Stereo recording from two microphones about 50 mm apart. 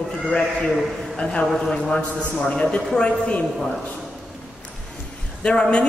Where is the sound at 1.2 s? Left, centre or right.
Left.